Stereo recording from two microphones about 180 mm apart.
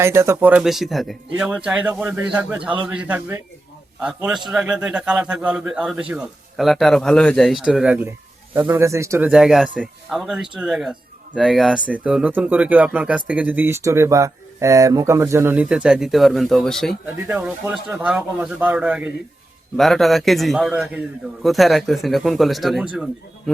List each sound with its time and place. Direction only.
0.0 s a man's voice: 15° right (ahead or behind)
9.3 s a man's voice: 5° right (ahead or behind)
17.4 s a man's voice: 10° right (ahead or behind)